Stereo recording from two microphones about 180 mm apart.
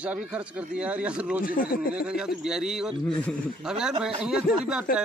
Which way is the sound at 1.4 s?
55° left (ahead or behind).